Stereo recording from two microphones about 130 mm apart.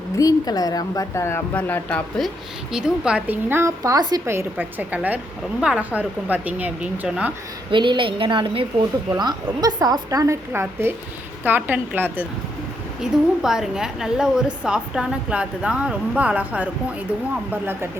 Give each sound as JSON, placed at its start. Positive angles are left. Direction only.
{"t": 0.2, "sound": "speech", "side_deg": 30}
{"t": 2.7, "sound": "a woman's voice", "side_deg": -5}
{"t": 4.3, "sound": "a woman's voice", "side_deg": -15}
{"t": 7.7, "sound": "a woman's voice", "side_deg": -40}
{"t": 13.0, "sound": "a woman's voice", "side_deg": -5}